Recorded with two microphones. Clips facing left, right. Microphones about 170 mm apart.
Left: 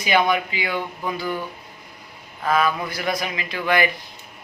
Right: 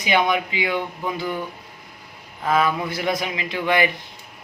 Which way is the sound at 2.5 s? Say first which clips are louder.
Right 1 dB; 20° right (ahead or behind).